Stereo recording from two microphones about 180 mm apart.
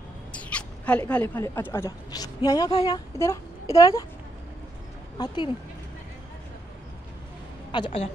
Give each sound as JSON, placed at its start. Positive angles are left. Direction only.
{"t": 0.3, "sound": "a woman's voice", "side_deg": 5}
{"t": 5.1, "sound": "speech", "side_deg": 25}
{"t": 7.7, "sound": "a woman's voice", "side_deg": 30}